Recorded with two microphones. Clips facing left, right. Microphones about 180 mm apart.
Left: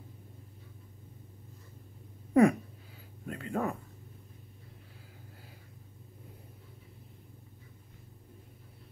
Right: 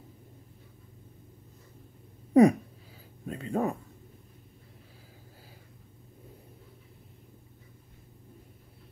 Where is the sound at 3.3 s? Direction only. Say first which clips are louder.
Right 4 dB; 25° right (ahead or behind).